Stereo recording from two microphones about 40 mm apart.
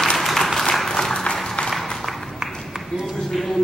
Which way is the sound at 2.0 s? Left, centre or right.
Centre.